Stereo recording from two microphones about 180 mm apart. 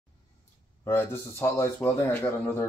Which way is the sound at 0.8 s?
15° left (ahead or behind).